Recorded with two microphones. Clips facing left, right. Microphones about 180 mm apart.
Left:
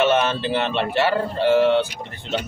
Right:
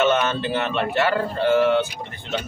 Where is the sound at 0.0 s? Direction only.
30° left (ahead or behind).